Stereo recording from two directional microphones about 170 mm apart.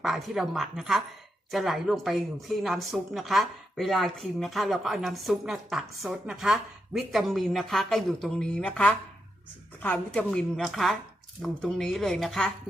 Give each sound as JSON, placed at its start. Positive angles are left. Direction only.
{"t": 0.0, "sound": "a woman's voice", "side_deg": 0}